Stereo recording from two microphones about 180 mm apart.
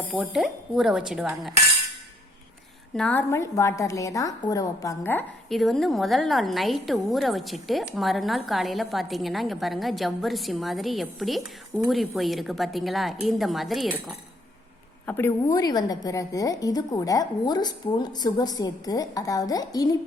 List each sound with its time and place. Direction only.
0.1 s a woman's voice: centre (ahead or behind)
2.9 s a woman's voice: 5° left (ahead or behind)
5.5 s a woman's voice: centre (ahead or behind)
15.5 s a woman's voice: 20° left (ahead or behind)